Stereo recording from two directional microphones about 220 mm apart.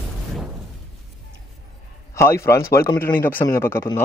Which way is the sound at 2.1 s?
10° left (ahead or behind).